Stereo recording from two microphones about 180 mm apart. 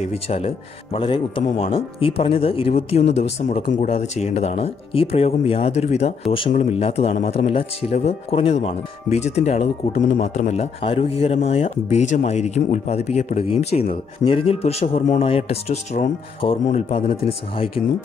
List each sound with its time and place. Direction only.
0.0 s a man's voice: 35° left (ahead or behind)